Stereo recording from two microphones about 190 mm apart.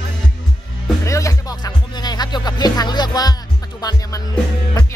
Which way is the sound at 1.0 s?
15° left (ahead or behind).